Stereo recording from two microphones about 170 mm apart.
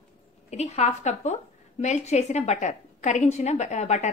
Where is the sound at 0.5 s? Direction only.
40° left (ahead or behind).